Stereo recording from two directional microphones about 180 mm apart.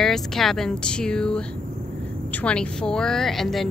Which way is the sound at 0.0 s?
Centre (ahead or behind).